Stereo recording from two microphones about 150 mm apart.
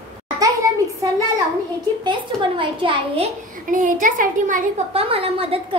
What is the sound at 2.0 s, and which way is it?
Speech, 35° right (ahead or behind).